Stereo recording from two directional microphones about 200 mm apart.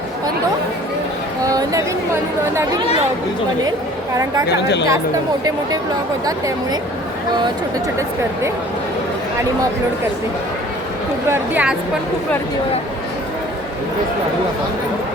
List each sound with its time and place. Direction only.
1.5 s a sound: 15° right (ahead or behind)
4.4 s speech: 55° left (ahead or behind)
11.3 s a woman's voice: 5° right (ahead or behind)